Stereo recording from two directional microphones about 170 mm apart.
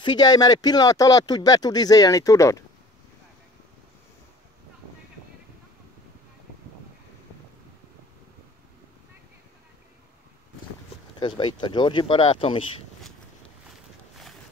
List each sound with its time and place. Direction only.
0.0 s speech: 25° left (ahead or behind)
11.1 s speech: 25° left (ahead or behind)